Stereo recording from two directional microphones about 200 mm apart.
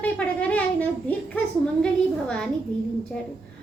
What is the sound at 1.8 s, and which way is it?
Speech, 5° left (ahead or behind).